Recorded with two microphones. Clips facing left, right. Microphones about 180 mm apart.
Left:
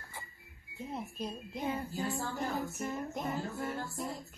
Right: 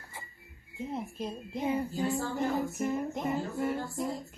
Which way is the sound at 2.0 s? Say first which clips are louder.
Right 5 dB; 20° right (ahead or behind).